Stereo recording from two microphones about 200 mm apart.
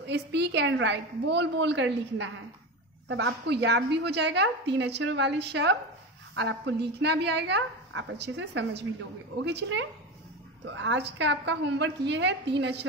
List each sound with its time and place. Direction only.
0.0 s a woman's voice: 55° right (ahead or behind)